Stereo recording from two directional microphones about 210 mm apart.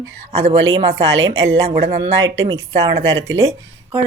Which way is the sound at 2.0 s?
60° right (ahead or behind).